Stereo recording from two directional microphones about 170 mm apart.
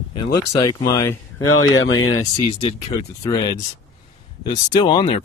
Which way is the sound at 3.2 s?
25° left (ahead or behind).